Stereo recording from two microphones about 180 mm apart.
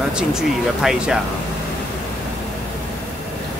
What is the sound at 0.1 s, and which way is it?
Speech, 5° right (ahead or behind).